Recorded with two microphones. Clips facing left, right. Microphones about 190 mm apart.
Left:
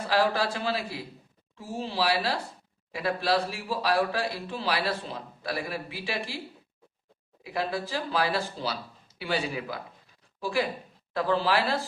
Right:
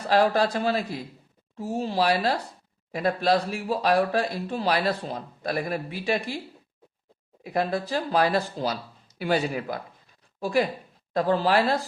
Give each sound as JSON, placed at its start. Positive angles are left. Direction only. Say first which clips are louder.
{"t": 0.1, "sound": "speech", "louder": "right 5 dB", "side_deg": -45}
{"t": 7.4, "sound": "speech", "louder": "right 4 dB", "side_deg": -45}